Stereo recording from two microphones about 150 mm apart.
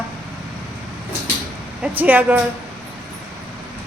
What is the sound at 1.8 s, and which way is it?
Speech, 10° right (ahead or behind).